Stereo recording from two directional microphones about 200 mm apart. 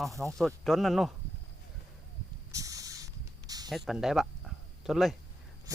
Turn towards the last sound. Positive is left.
turn(degrees=-15)  # may be behind; listen again after turning